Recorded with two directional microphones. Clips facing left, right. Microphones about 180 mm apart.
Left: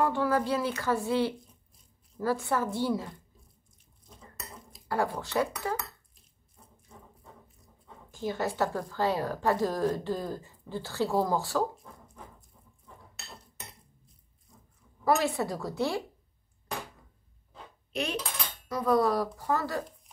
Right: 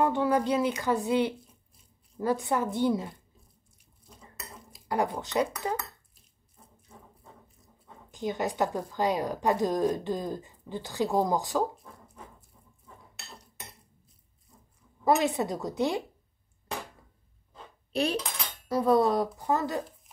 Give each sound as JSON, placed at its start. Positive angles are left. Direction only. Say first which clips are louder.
{"t": 0.0, "sound": "a woman's voice", "louder": "right 2 dB", "side_deg": -20}
{"t": 4.8, "sound": "a woman's voice", "louder": "right 1 dB", "side_deg": -20}
{"t": 8.1, "sound": "a woman's voice", "louder": "right 1 dB", "side_deg": -15}
{"t": 15.0, "sound": "a woman's voice", "louder": "right 2 dB", "side_deg": -20}
{"t": 17.9, "sound": "dishes", "louder": "right 5 dB", "side_deg": -35}
{"t": 18.7, "sound": "a woman's voice", "louder": "right 2 dB", "side_deg": -25}